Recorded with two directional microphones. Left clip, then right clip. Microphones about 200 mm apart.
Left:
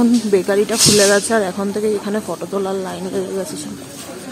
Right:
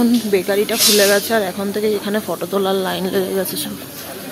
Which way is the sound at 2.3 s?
5° right (ahead or behind).